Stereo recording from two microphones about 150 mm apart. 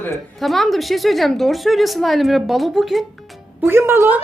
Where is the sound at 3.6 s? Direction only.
15° right (ahead or behind).